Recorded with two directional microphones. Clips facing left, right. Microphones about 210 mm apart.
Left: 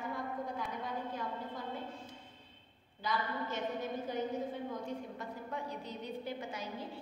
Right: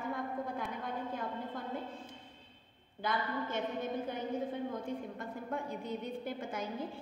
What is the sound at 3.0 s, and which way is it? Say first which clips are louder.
Speech: right 1 dB; 55° right (ahead or behind).